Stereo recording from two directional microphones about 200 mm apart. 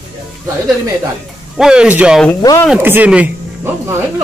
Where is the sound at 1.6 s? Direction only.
5° right (ahead or behind).